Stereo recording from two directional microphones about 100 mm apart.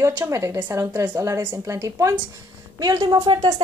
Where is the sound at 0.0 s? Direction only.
30° right (ahead or behind).